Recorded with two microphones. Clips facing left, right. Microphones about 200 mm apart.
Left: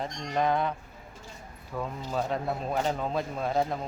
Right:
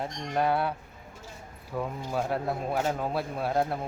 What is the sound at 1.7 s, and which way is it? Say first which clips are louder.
Speech: right 1 dB; 10° right (ahead or behind).